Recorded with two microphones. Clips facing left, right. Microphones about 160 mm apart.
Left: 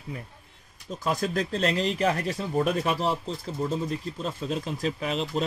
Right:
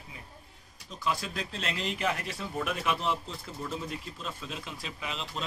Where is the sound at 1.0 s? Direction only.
45° left (ahead or behind).